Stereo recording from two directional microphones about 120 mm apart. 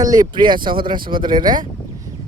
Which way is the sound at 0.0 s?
30° right (ahead or behind).